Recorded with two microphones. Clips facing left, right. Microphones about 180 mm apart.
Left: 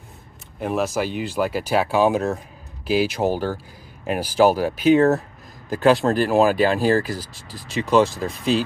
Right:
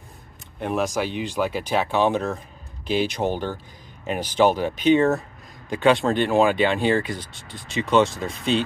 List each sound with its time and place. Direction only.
0.6 s speech: 5° left (ahead or behind)